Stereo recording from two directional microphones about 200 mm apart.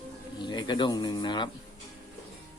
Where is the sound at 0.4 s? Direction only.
20° left (ahead or behind).